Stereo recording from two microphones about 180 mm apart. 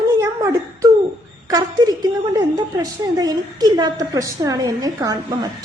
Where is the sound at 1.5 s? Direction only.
20° right (ahead or behind).